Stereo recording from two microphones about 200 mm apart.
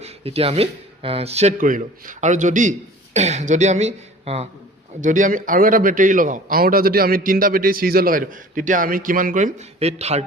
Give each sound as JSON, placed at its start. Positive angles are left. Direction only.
{"t": 0.0, "sound": "a man's voice", "side_deg": -30}